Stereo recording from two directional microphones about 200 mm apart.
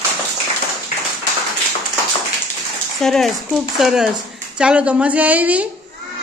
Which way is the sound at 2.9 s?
Centre (ahead or behind).